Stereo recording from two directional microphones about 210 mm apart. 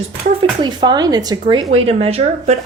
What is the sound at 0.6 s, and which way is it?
A woman's voice, 20° right (ahead or behind).